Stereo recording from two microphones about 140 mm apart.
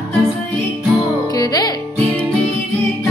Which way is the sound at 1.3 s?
25° left (ahead or behind).